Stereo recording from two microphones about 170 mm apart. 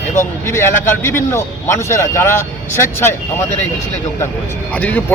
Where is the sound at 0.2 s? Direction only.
15° left (ahead or behind).